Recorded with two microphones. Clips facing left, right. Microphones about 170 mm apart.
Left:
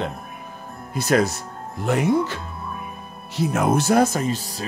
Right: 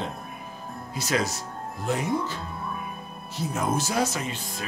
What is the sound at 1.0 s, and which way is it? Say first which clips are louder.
Speech: left 8 dB; 55° left (ahead or behind).